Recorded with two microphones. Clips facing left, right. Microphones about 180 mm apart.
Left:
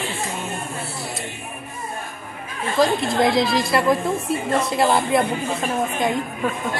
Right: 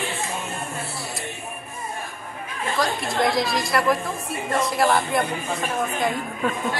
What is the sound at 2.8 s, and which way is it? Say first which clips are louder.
A woman's voice: left 5 dB; 25° left (ahead or behind).